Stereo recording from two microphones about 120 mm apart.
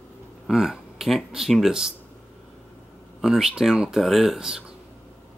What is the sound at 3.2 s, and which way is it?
Speech, 5° right (ahead or behind).